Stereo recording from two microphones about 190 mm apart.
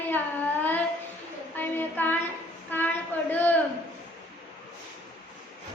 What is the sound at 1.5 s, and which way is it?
Child singing, 10° left (ahead or behind).